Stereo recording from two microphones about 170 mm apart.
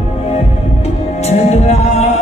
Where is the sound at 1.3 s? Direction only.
40° left (ahead or behind).